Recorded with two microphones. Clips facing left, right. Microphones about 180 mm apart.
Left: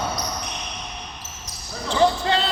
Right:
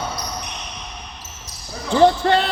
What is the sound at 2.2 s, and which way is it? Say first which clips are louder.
Music: right 5 dB; 50° right (ahead or behind).